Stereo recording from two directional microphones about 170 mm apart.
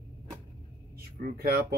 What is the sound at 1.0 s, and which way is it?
Speech, 60° right (ahead or behind).